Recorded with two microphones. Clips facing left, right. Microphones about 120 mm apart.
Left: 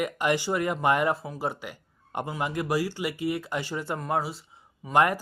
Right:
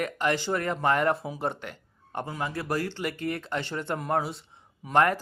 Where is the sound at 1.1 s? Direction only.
Centre (ahead or behind).